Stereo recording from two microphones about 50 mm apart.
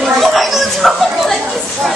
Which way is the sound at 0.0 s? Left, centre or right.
Centre.